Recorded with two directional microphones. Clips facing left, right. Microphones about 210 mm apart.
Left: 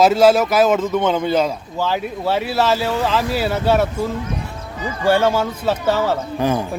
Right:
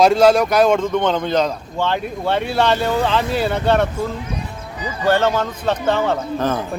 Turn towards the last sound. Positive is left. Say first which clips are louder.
# left 1 dB
turn(degrees=10)  # may be behind; listen again after turning